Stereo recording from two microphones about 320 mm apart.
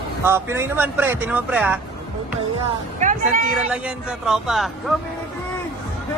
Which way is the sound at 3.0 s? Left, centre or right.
Right.